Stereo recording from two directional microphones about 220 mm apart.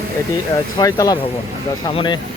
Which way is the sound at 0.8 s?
15° left (ahead or behind).